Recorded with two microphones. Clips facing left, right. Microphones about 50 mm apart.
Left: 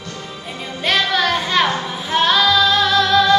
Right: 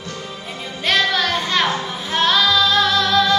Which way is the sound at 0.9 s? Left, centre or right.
Centre.